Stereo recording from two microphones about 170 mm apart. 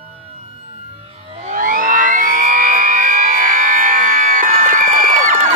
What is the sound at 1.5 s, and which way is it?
Siren, 50° right (ahead or behind).